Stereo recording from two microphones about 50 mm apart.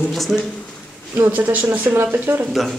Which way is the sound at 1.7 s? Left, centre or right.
Right.